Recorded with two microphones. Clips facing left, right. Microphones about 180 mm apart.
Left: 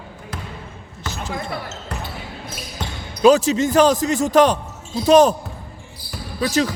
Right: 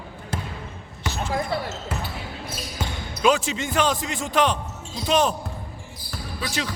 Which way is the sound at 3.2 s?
40° left (ahead or behind).